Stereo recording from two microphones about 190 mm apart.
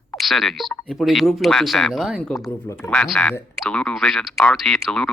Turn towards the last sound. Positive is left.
turn(degrees=0)  # may be behind; listen again after turning